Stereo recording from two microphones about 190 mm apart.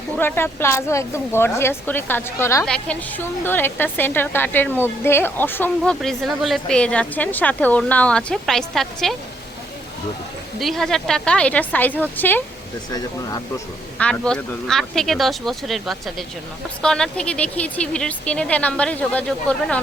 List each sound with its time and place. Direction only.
0.2 s a woman's voice: 10° left (ahead or behind)
10.6 s speech: centre (ahead or behind)
12.9 s speech: 20° left (ahead or behind)
14.0 s a woman's voice: 5° left (ahead or behind)